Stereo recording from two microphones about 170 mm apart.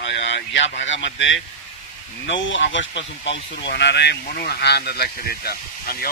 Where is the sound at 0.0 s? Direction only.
90° left.